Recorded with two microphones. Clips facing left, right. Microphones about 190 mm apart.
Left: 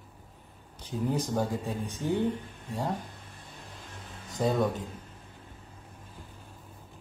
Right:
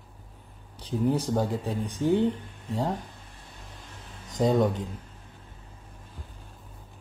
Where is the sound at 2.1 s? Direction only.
10° left (ahead or behind).